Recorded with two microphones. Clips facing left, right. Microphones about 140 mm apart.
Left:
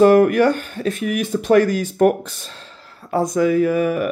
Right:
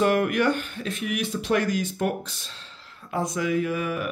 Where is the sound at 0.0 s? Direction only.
40° left (ahead or behind).